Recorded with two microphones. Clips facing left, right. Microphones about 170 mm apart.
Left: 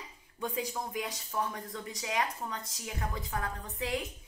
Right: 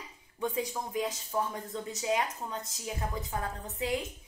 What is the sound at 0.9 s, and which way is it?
Speech, 25° right (ahead or behind).